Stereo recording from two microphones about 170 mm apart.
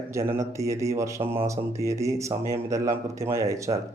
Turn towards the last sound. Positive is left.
turn(degrees=-20)  # may be behind; listen again after turning